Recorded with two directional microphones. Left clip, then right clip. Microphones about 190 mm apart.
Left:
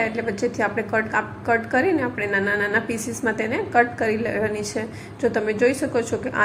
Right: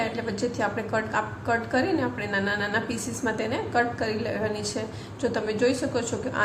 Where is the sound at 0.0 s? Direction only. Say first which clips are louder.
Left 5 dB; 20° left (ahead or behind).